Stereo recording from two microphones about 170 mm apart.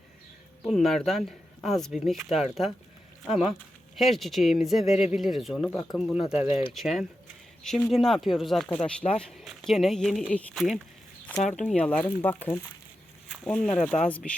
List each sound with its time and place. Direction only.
0.6 s speech: centre (ahead or behind)
6.5 s speech: 30° left (ahead or behind)
6.7 s speech: centre (ahead or behind)